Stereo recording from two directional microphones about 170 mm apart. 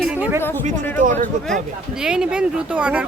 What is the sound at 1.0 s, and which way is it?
Speech, 50° right (ahead or behind).